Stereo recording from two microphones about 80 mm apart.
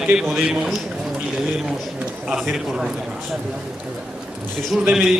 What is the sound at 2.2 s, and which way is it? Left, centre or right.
Speech, centre.